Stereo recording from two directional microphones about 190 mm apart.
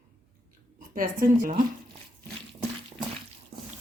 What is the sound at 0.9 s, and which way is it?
Speech, 45° right (ahead or behind).